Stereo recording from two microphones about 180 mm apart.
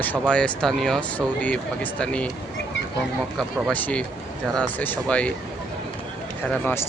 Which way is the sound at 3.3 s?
10° left (ahead or behind).